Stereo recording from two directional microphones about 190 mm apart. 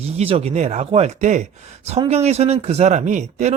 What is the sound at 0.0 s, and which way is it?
Speech, 35° right (ahead or behind).